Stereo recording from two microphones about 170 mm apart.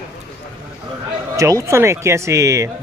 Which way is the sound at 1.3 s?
20° right (ahead or behind).